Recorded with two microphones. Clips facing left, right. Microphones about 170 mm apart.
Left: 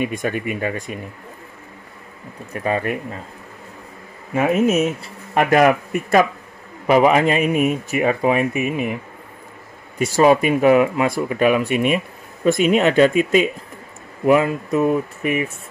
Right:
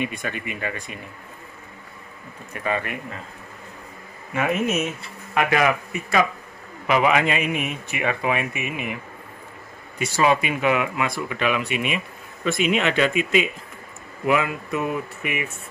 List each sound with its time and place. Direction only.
0.0 s speech: 45° left (ahead or behind)
2.5 s speech: 35° left (ahead or behind)
4.3 s speech: 40° left (ahead or behind)
6.9 s speech: 40° left (ahead or behind)
9.9 s speech: 40° left (ahead or behind)